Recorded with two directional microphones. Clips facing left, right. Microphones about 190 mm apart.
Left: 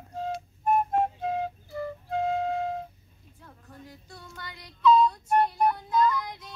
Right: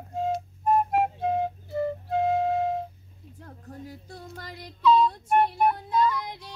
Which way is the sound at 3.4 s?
40° right (ahead or behind).